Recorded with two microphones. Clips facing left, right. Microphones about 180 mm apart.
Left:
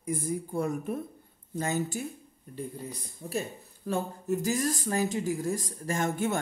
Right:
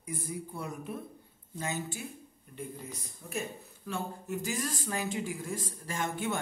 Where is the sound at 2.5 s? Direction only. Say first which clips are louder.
Left 4 dB; 35° left (ahead or behind).